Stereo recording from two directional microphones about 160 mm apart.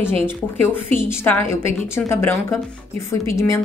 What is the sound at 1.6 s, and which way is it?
A woman's voice, 15° left (ahead or behind).